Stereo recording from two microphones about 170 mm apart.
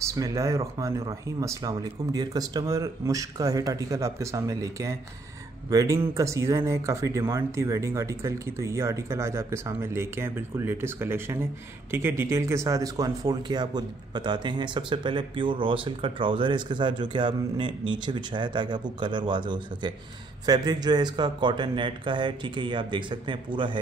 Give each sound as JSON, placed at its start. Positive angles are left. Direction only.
{"t": 0.1, "sound": "speech", "side_deg": -20}